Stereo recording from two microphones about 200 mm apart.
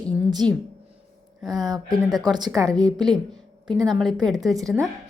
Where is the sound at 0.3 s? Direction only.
20° right (ahead or behind).